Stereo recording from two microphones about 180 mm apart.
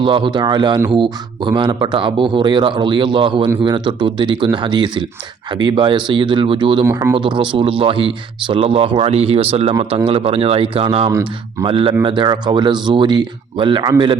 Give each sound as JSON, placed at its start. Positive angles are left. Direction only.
{"t": 0.0, "sound": "speech", "side_deg": -25}
{"t": 6.8, "sound": "speech", "side_deg": -15}
{"t": 7.2, "sound": "speech", "side_deg": -25}